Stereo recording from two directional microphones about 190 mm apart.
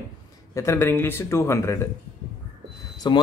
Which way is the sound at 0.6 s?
15° left (ahead or behind).